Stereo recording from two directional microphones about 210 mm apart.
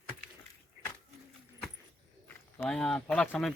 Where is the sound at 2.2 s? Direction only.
5° left (ahead or behind).